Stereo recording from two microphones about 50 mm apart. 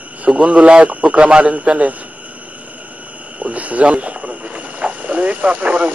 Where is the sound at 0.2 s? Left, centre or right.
Right.